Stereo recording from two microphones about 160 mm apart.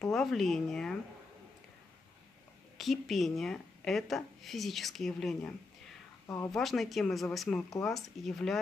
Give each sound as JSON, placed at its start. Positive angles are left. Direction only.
{"t": 0.1, "sound": "a woman's voice", "side_deg": 0}
{"t": 2.8, "sound": "a woman's voice", "side_deg": 0}
{"t": 6.2, "sound": "speech", "side_deg": 20}
{"t": 6.5, "sound": "a woman's voice", "side_deg": 0}